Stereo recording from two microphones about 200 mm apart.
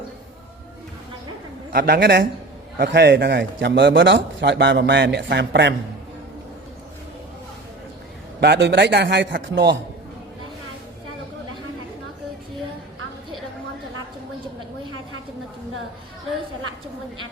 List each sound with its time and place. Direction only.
1.7 s a man's voice: 50° right (ahead or behind)
8.4 s a man's voice: 55° right (ahead or behind)